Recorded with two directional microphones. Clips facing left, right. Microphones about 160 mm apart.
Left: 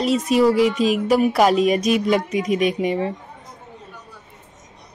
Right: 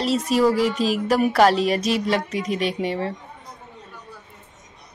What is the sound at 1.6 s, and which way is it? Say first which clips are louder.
Speech: left 4 dB; 30° right (ahead or behind).